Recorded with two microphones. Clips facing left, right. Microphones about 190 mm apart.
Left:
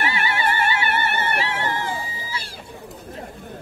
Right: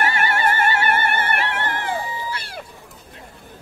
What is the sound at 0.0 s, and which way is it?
Music, 50° right (ahead or behind).